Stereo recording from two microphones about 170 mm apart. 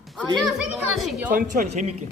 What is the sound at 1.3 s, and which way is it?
Speech, 50° right (ahead or behind).